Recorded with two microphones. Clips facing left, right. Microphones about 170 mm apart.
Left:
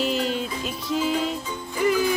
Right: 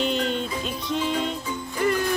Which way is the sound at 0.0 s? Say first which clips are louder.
Even; 5° left (ahead or behind).